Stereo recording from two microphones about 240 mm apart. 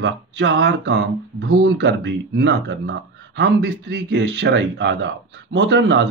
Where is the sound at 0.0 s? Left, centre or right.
Right.